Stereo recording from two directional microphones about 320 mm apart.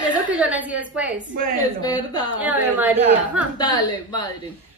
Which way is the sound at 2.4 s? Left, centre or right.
Centre.